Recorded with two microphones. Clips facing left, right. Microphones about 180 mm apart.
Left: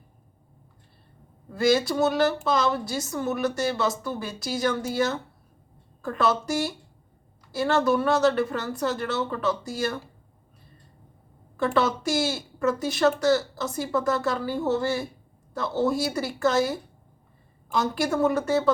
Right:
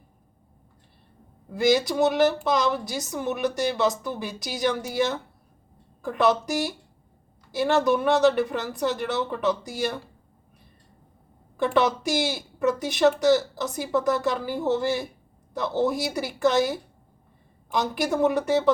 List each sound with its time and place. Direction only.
1.5 s a woman's voice: 15° right (ahead or behind)
11.5 s a woman's voice: 15° right (ahead or behind)